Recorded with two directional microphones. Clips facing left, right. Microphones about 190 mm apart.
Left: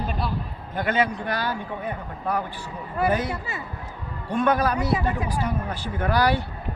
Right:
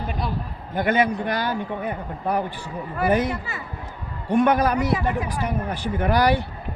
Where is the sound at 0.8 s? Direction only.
15° right (ahead or behind).